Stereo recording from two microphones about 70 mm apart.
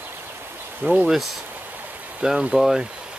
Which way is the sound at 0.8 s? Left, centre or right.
Right.